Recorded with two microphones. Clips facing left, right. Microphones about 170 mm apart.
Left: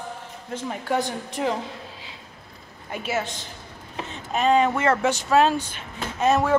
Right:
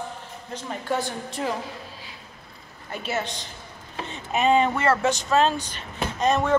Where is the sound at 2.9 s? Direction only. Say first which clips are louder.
Left 1 dB; 5° left (ahead or behind).